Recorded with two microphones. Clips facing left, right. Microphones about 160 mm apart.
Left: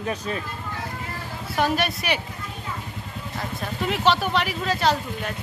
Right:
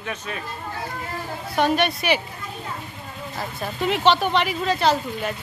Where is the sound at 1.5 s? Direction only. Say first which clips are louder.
Right 3 dB; centre (ahead or behind).